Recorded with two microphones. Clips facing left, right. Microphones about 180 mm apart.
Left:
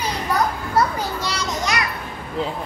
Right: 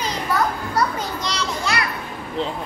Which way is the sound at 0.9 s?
15° left (ahead or behind).